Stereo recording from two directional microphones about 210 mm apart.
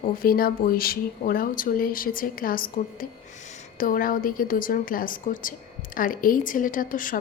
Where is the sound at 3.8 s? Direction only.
40° left (ahead or behind).